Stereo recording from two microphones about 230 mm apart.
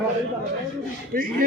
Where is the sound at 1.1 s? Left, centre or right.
Right.